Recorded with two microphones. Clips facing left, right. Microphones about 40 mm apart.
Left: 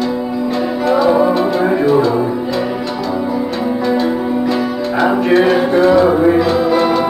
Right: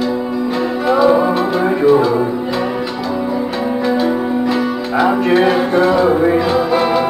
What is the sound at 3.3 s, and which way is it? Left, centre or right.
Music, centre.